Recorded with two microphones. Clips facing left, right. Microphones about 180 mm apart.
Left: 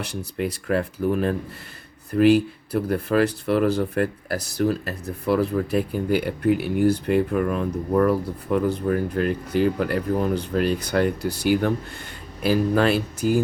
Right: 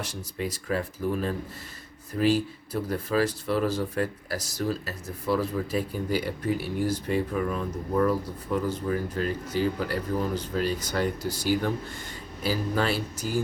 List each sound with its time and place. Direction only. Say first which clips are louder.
0.0 s speech: left 5 dB; 65° left (ahead or behind)